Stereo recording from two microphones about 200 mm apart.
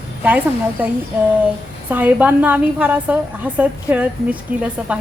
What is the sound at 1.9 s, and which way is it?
A woman's voice, 10° right (ahead or behind).